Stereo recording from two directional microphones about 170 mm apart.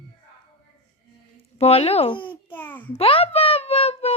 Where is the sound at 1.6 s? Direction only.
35° left (ahead or behind).